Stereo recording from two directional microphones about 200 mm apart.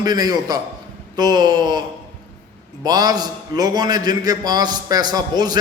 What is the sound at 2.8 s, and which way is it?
A man's voice, 20° right (ahead or behind).